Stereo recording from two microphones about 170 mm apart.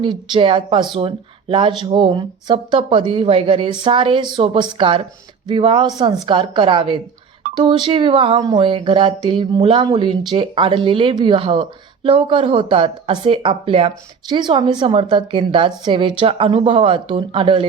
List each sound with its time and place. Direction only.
0.0 s speech: 30° right (ahead or behind)